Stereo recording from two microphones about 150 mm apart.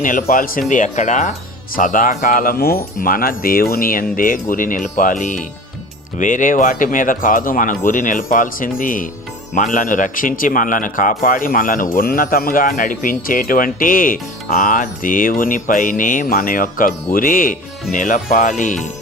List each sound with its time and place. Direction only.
0.0 s speech: 65° left (ahead or behind)
0.7 s speech: 55° left (ahead or behind)